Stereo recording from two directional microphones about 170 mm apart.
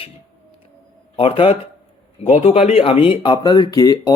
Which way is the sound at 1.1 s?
35° left (ahead or behind).